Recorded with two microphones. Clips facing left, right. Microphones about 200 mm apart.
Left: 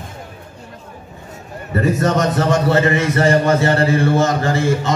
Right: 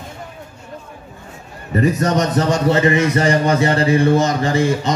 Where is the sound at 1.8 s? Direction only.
15° right (ahead or behind).